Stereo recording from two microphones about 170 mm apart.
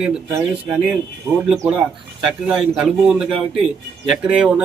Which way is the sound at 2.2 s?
Centre (ahead or behind).